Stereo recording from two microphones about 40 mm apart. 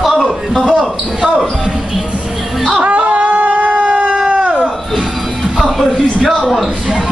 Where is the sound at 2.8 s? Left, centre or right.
Right.